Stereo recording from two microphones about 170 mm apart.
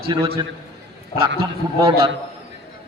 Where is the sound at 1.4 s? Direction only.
30° right (ahead or behind).